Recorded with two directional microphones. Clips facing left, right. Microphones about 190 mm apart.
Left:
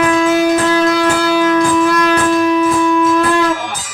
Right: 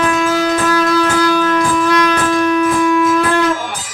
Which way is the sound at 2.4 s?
Centre (ahead or behind).